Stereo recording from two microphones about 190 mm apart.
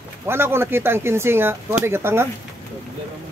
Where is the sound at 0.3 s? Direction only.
10° right (ahead or behind).